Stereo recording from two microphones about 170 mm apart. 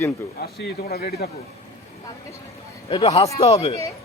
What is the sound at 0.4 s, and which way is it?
Speech, 65° left (ahead or behind).